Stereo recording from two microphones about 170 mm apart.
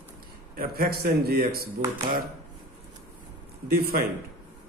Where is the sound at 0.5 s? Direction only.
65° right (ahead or behind).